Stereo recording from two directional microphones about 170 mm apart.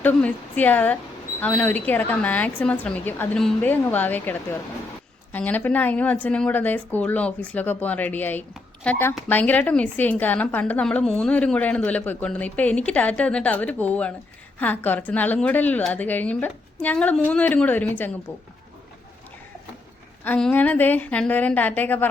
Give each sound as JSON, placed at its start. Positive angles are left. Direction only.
{"t": 0.0, "sound": "a woman's voice", "side_deg": 10}
{"t": 20.2, "sound": "a woman's voice", "side_deg": 10}